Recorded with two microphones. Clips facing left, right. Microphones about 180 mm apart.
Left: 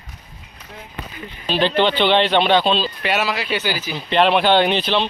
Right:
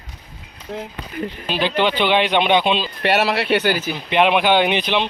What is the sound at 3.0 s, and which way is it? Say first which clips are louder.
Speech: right 4 dB; 60° right (ahead or behind).